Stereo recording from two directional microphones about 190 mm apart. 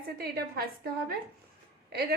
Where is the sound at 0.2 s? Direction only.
55° right (ahead or behind).